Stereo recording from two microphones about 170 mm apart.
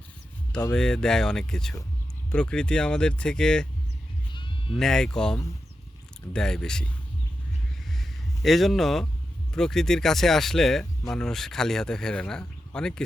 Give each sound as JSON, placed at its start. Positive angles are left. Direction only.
{"t": 0.7, "sound": "speech", "side_deg": 5}
{"t": 4.3, "sound": "sheep", "side_deg": 30}
{"t": 4.8, "sound": "speech", "side_deg": 5}
{"t": 7.9, "sound": "a sound", "side_deg": 0}
{"t": 9.6, "sound": "speech", "side_deg": 5}